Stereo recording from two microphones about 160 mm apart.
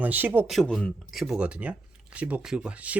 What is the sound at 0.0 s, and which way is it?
Speech, 10° right (ahead or behind).